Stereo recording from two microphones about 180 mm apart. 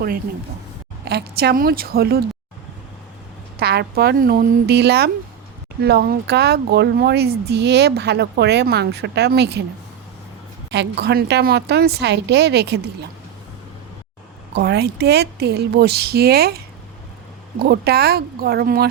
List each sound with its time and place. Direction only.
1.0 s speech: 60° right (ahead or behind)
3.6 s speech: 65° right (ahead or behind)
10.7 s a woman's voice: 70° right (ahead or behind)
14.5 s speech: 70° right (ahead or behind)
17.6 s speech: 60° right (ahead or behind)